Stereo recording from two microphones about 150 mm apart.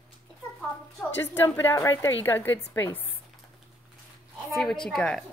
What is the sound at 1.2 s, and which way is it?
A woman's voice, 15° left (ahead or behind).